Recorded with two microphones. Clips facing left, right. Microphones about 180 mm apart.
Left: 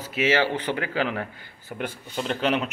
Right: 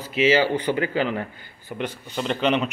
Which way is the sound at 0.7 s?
Centre (ahead or behind).